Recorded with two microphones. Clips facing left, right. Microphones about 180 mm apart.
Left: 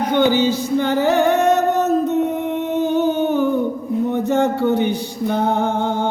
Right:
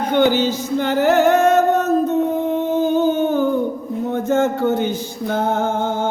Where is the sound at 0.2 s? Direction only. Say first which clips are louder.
Even; 15° left (ahead or behind).